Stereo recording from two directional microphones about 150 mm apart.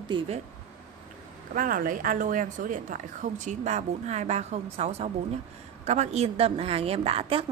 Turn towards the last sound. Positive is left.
turn(degrees=-40)  # may be behind; listen again after turning